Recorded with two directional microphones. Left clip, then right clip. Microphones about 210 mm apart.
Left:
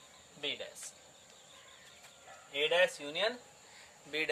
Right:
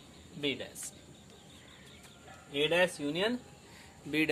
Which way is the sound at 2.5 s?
10° right (ahead or behind).